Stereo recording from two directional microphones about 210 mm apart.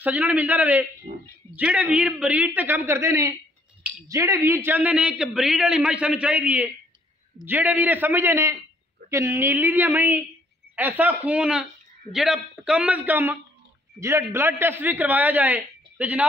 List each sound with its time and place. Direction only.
0.0 s a man's voice: 5° right (ahead or behind)
1.1 s speech: 30° right (ahead or behind)
1.5 s a man's voice: 5° right (ahead or behind)